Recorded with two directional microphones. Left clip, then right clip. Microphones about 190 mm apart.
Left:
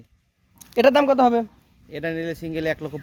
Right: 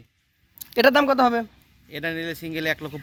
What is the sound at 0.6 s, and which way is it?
Speech, centre (ahead or behind).